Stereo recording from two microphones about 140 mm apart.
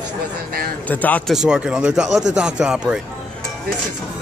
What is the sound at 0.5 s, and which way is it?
Speech, 90° right.